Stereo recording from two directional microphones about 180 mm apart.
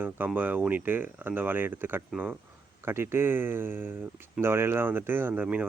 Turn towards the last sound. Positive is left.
turn(degrees=-5)  # may be behind; listen again after turning